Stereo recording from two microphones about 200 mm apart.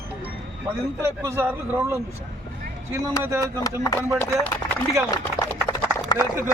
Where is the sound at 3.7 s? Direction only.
15° left (ahead or behind).